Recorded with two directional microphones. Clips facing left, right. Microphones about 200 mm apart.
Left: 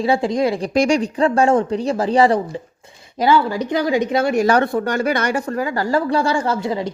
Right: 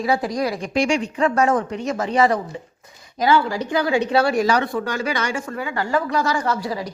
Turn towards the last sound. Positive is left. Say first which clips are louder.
# left 3 dB
turn(degrees=25)  # may be behind; listen again after turning